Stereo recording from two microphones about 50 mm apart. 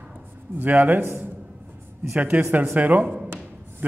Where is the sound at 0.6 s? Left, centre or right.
Right.